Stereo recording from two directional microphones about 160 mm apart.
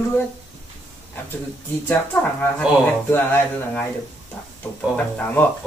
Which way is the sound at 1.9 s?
10° left (ahead or behind).